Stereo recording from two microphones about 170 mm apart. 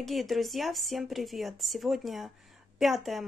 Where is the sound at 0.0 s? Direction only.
Centre (ahead or behind).